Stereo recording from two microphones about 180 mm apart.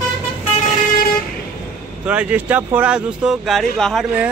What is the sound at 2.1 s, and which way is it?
Speech, 5° right (ahead or behind).